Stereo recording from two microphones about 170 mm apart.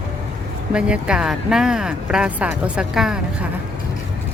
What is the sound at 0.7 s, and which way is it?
Speech, 5° right (ahead or behind).